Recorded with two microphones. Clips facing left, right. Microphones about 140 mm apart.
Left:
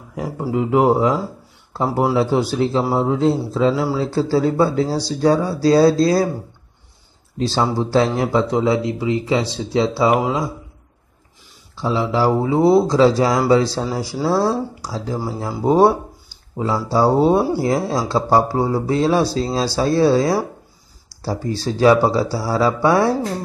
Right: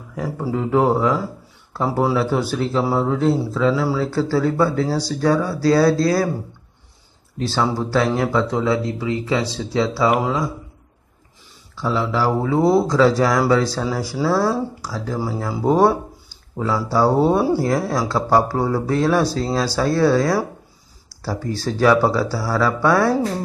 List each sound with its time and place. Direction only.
0.1 s speech: 20° left (ahead or behind)
7.5 s speech: 20° left (ahead or behind)
11.8 s speech: 20° left (ahead or behind)
21.6 s speech: 20° left (ahead or behind)